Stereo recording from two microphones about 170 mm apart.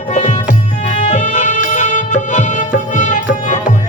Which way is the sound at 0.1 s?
45° left (ahead or behind).